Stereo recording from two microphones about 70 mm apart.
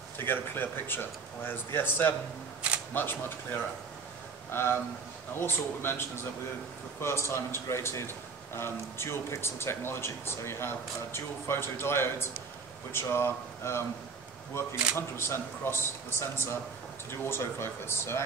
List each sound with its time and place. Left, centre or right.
0.2 s a man's voice: left